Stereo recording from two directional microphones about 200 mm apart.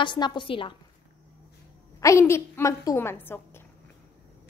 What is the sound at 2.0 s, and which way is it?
A woman's voice, 15° left (ahead or behind).